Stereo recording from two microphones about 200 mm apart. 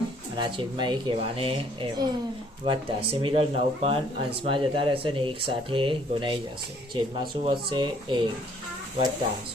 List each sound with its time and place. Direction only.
0.3 s speech: 25° right (ahead or behind)